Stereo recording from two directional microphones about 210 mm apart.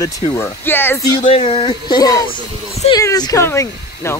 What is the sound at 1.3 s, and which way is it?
Speech, 30° left (ahead or behind).